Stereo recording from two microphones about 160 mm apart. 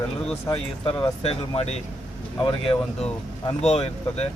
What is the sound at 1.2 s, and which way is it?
Speech, 40° left (ahead or behind).